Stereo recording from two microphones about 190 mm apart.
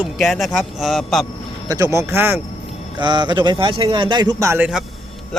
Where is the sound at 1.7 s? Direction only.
15° right (ahead or behind).